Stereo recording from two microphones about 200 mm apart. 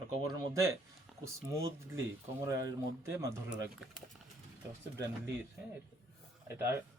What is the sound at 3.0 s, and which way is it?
Speech, 15° right (ahead or behind).